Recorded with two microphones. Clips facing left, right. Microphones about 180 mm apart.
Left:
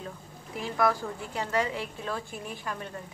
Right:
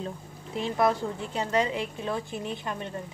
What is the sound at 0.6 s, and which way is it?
A woman's voice, 25° right (ahead or behind).